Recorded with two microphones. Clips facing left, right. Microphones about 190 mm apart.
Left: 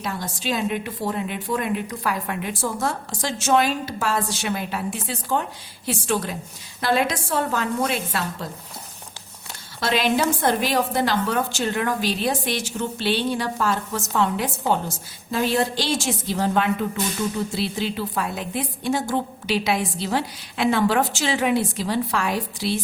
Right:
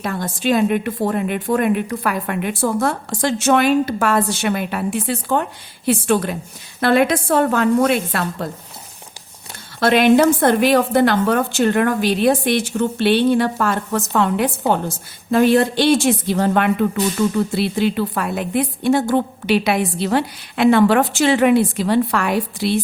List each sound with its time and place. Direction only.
0.0 s a woman's voice: 55° right (ahead or behind)
9.8 s a woman's voice: 60° right (ahead or behind)